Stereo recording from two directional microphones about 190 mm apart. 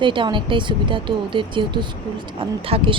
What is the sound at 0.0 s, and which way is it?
A woman's voice, 25° right (ahead or behind).